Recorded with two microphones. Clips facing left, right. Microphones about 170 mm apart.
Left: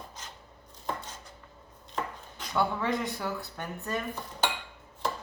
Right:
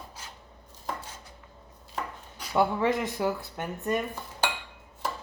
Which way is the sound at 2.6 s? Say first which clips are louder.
Right 4 dB; 20° right (ahead or behind).